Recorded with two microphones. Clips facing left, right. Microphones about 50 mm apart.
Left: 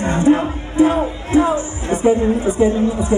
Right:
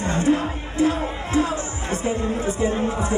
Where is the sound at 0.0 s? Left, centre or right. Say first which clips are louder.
Left 6 dB; left.